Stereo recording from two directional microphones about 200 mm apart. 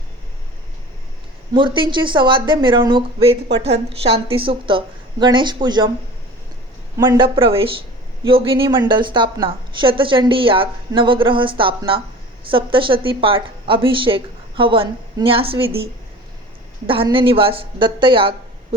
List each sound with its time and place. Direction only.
1.5 s a woman's voice: 25° right (ahead or behind)
6.9 s a woman's voice: 20° right (ahead or behind)
16.8 s a woman's voice: 25° right (ahead or behind)